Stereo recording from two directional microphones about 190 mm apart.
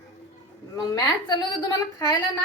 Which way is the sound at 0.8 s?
20° left (ahead or behind).